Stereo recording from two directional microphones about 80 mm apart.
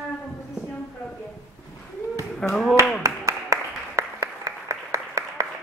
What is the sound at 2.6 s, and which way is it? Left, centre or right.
Clapping, right.